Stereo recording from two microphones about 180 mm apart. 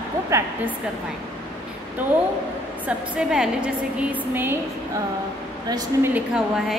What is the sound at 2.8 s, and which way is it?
A woman's voice, 5° right (ahead or behind).